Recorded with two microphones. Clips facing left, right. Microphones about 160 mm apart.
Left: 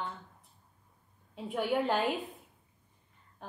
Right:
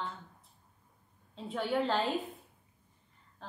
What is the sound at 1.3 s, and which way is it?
Speech, 15° left (ahead or behind).